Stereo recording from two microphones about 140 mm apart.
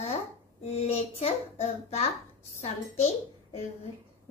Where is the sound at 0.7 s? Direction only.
45° left (ahead or behind).